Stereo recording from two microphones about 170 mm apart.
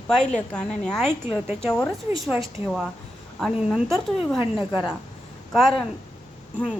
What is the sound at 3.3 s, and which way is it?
Speech, centre (ahead or behind).